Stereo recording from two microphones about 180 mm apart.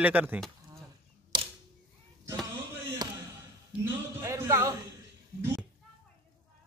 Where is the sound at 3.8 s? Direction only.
15° right (ahead or behind).